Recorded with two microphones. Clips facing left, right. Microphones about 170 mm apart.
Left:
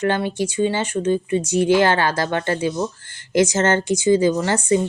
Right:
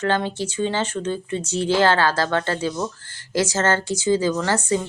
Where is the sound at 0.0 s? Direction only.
15° left (ahead or behind).